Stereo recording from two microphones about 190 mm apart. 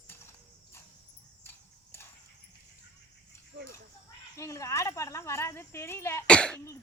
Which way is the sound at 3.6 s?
70° right (ahead or behind).